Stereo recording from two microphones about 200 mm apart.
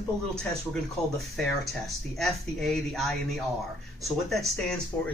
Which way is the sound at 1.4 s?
Centre (ahead or behind).